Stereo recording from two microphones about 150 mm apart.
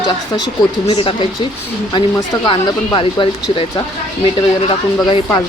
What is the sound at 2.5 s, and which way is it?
Speech, 35° left (ahead or behind).